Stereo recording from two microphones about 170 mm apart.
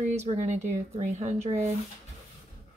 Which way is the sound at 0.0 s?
40° right (ahead or behind).